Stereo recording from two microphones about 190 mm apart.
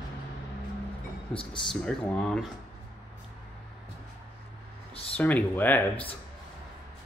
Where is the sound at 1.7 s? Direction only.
5° left (ahead or behind).